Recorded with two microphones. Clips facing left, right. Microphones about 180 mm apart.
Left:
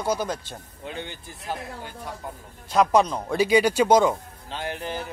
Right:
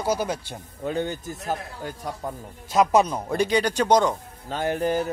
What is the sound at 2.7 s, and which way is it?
Speech, 5° right (ahead or behind).